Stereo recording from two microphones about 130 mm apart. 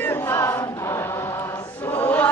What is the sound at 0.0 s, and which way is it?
Choir, 15° left (ahead or behind).